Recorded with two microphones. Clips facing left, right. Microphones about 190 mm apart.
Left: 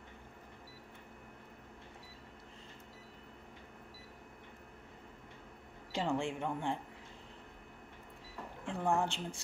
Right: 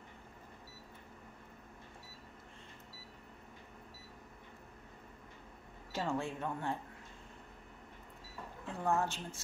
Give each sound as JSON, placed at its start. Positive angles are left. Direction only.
{"t": 5.9, "sound": "speech", "side_deg": 15}
{"t": 8.6, "sound": "speech", "side_deg": 15}